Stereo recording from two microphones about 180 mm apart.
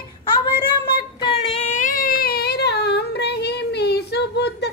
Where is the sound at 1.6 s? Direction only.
45° left (ahead or behind); by 4.7 s 65° left (ahead or behind).